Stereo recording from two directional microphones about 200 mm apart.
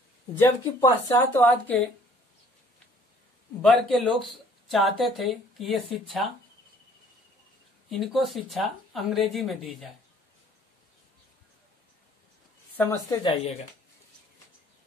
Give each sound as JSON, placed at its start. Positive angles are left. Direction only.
{"t": 0.4, "sound": "speech", "side_deg": 20}
{"t": 3.6, "sound": "speech", "side_deg": 0}
{"t": 7.9, "sound": "speech", "side_deg": 0}
{"t": 12.7, "sound": "speech", "side_deg": 10}
{"t": 13.2, "sound": "speech", "side_deg": 25}